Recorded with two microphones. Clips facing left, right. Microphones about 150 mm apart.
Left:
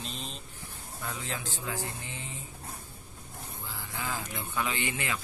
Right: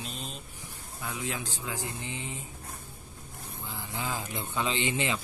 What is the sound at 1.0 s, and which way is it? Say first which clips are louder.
Speech: right 2 dB; 15° right (ahead or behind).